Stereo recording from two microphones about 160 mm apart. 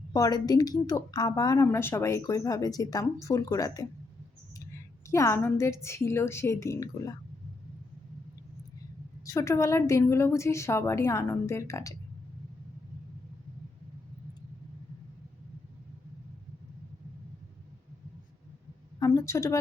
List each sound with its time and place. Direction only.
0.1 s a woman's voice: 25° left (ahead or behind)
9.2 s a woman's voice: 20° left (ahead or behind)
18.9 s a woman's voice: 20° left (ahead or behind)